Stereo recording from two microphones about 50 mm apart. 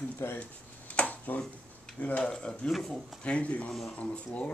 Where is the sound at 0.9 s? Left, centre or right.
Left.